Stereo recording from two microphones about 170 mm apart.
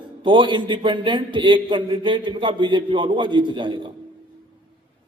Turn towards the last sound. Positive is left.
turn(degrees=-30)  # may be behind; listen again after turning